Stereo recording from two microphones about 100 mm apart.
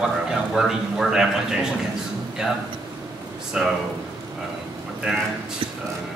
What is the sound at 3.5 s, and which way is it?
Speech, 10° right (ahead or behind).